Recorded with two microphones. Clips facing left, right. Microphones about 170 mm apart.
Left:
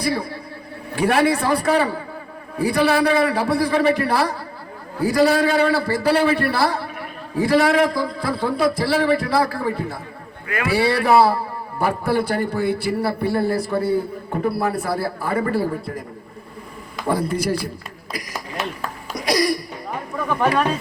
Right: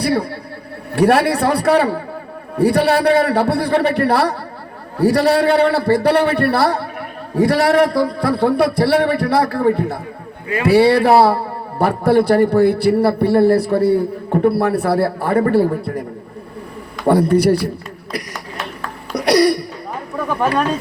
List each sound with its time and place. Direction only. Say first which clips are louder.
0.0 s a man's voice: right 5 dB; 65° right (ahead or behind)
17.1 s a man's voice: right 9 dB; 65° right (ahead or behind)
19.1 s a man's voice: right 7 dB; 65° right (ahead or behind)
20.1 s speech: right 2 dB; 5° right (ahead or behind)